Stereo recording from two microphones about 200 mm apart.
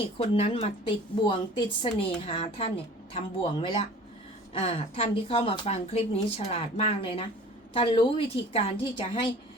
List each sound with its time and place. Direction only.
0.2 s a woman's voice: 30° left (ahead or behind)